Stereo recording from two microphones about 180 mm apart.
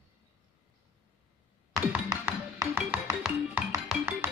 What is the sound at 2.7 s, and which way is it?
Music, 5° right (ahead or behind).